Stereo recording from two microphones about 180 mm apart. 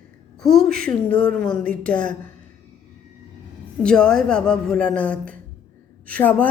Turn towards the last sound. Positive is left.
turn(degrees=10)  # may be behind; listen again after turning